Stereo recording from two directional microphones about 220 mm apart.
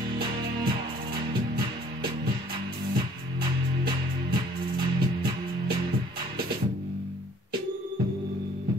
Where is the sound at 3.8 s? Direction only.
45° right (ahead or behind).